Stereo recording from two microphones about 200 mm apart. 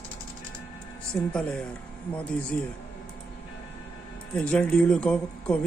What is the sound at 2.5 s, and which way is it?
Speech, 10° left (ahead or behind).